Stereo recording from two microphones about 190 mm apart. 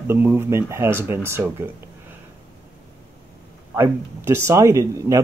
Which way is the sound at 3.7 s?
15° right (ahead or behind).